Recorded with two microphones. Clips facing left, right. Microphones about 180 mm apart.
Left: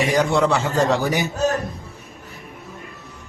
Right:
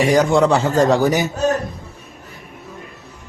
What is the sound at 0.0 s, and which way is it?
A man's voice, 40° right (ahead or behind).